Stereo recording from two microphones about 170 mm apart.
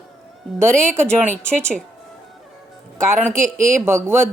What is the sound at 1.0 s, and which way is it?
Speech, 5° left (ahead or behind).